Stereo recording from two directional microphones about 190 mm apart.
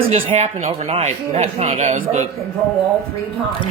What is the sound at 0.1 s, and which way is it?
Speech, 35° right (ahead or behind).